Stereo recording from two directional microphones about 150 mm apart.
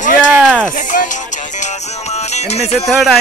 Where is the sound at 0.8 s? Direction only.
60° left (ahead or behind).